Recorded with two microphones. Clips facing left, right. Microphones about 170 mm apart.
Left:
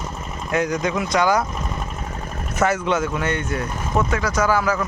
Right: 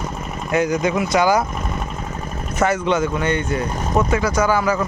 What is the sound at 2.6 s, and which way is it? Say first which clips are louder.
Speech: right 2 dB; centre (ahead or behind).